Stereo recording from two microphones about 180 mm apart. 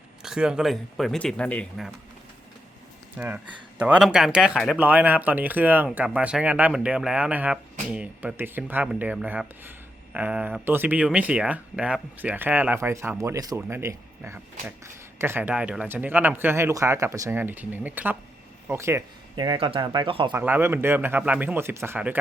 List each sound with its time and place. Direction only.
0.2 s speech: 5° right (ahead or behind)
3.2 s speech: 10° right (ahead or behind)
19.5 s speech: 30° right (ahead or behind)
20.3 s speech: 10° right (ahead or behind)